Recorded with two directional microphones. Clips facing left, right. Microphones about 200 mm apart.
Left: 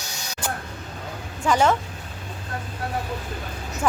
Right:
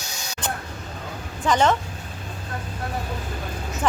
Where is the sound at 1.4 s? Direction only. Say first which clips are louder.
Even; 10° left (ahead or behind).